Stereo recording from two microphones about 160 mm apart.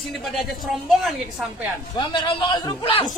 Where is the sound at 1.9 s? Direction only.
25° left (ahead or behind).